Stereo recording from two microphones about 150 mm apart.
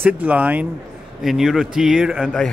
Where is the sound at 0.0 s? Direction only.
10° right (ahead or behind).